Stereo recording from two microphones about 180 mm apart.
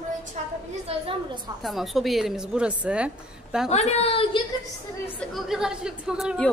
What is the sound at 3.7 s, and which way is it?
Speech, 35° left (ahead or behind).